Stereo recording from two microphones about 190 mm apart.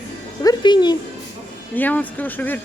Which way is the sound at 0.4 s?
25° left (ahead or behind).